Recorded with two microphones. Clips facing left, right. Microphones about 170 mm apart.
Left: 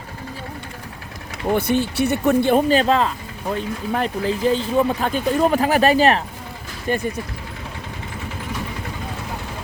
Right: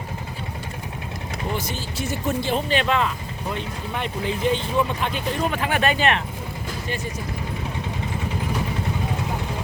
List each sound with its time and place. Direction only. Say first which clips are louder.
1.5 s speech: left 10 dB; 60° left (ahead or behind); by 6.2 s 35° left (ahead or behind)
6.8 s speech: left 9 dB; 50° left (ahead or behind)